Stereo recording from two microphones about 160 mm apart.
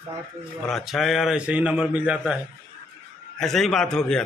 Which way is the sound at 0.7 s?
Centre (ahead or behind).